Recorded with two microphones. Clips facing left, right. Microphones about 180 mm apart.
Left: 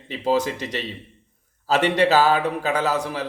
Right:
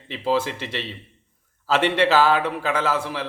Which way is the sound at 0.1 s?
40° left (ahead or behind).